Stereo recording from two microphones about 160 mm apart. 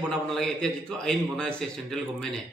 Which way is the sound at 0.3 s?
5° left (ahead or behind).